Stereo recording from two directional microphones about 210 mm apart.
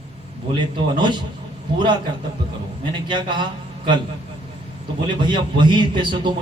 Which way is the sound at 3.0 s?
20° right (ahead or behind).